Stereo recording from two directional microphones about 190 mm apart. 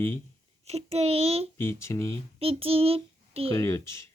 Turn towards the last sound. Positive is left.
turn(degrees=15)  # may be behind; listen again after turning